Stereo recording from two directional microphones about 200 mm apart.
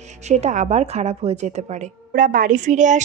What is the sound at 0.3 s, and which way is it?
Speech, 35° right (ahead or behind).